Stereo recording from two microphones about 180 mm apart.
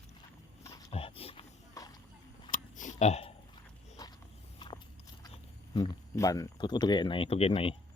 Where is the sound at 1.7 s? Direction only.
20° left (ahead or behind).